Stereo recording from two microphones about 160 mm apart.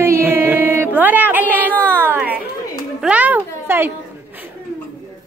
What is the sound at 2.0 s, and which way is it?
Chatter, 10° right (ahead or behind).